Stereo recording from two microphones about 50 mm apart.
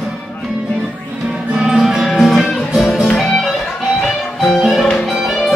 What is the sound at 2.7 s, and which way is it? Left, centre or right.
Music, centre.